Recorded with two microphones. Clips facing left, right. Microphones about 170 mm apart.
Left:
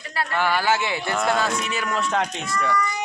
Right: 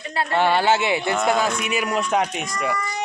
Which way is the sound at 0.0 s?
25° right (ahead or behind).